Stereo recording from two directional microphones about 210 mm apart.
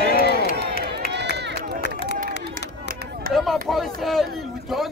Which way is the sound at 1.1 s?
55° right (ahead or behind).